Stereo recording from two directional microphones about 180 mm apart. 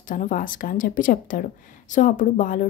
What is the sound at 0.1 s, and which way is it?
A woman's voice, 50° left (ahead or behind).